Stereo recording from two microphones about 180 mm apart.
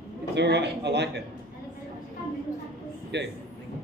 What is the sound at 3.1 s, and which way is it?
Speech, 75° right (ahead or behind).